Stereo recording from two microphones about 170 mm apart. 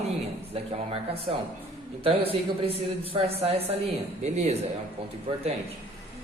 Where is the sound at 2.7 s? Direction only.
35° right (ahead or behind).